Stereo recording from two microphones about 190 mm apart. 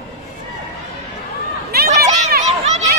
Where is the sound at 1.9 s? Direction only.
40° right (ahead or behind).